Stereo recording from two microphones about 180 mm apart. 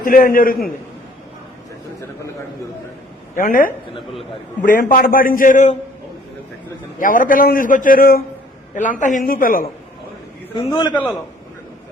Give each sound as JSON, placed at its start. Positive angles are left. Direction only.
{"t": 0.0, "sound": "a man's voice", "side_deg": 50}
{"t": 3.3, "sound": "a man's voice", "side_deg": 50}
{"t": 7.0, "sound": "a man's voice", "side_deg": 50}
{"t": 8.7, "sound": "a man's voice", "side_deg": 45}
{"t": 10.5, "sound": "a man's voice", "side_deg": 25}